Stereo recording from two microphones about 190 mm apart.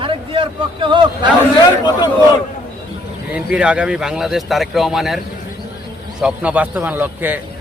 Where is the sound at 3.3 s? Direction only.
5° right (ahead or behind).